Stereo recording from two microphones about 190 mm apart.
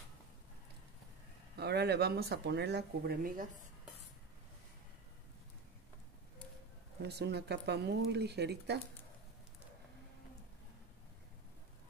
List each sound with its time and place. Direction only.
1.6 s speech: 60° right (ahead or behind)
7.0 s speech: 60° right (ahead or behind)